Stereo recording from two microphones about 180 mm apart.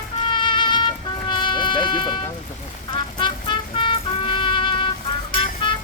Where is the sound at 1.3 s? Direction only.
25° left (ahead or behind).